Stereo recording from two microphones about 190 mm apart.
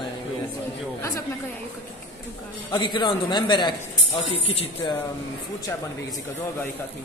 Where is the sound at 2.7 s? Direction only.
25° left (ahead or behind).